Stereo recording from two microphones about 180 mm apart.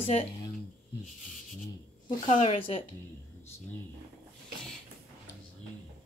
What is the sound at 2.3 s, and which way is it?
Speech, 40° left (ahead or behind).